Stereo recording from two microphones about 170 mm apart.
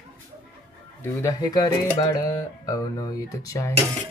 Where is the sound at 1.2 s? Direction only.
20° left (ahead or behind).